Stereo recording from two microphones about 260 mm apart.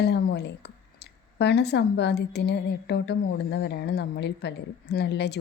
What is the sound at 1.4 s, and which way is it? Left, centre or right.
A woman's voice, left.